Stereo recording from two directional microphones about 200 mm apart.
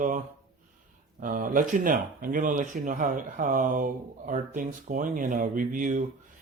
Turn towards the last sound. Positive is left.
turn(degrees=-40)  # may be behind; listen again after turning